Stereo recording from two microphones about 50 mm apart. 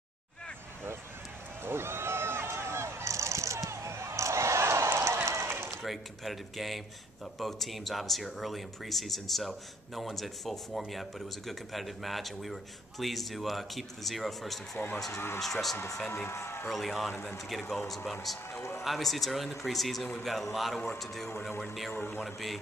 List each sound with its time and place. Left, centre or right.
1.6 s a sound: right
5.8 s speech: centre
15.1 s speech: left
15.4 s speech: centre
16.3 s a man's voice: left
16.6 s speech: centre
22.2 s speech: centre